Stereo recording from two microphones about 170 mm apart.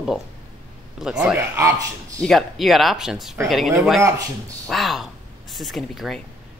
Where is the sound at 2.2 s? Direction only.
Centre (ahead or behind).